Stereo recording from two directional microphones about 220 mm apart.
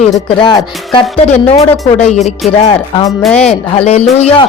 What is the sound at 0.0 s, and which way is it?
Speech, 20° left (ahead or behind).